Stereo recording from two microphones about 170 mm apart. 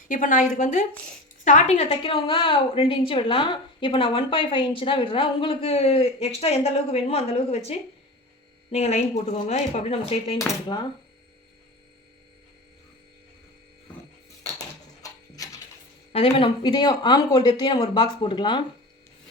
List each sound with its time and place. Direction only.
0.1 s a woman's voice: 50° left (ahead or behind)
10.7 s speech: 25° left (ahead or behind)
15.0 s a sound: 20° left (ahead or behind)
16.1 s speech: 35° left (ahead or behind)